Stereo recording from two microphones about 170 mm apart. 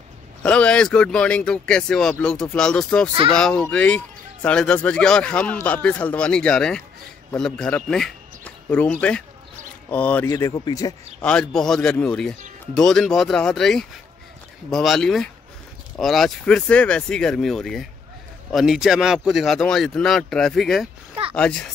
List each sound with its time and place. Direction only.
0.4 s a man's voice: 5° left (ahead or behind)
10.3 s speech: 20° left (ahead or behind)
11.1 s speech: 5° left (ahead or behind)